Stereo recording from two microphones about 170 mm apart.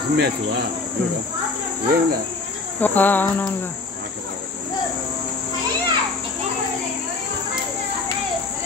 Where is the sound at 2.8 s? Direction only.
10° left (ahead or behind).